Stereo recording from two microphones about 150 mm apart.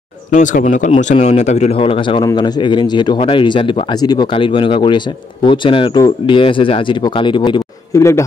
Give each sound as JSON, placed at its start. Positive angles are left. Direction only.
{"t": 0.3, "sound": "speech", "side_deg": 60}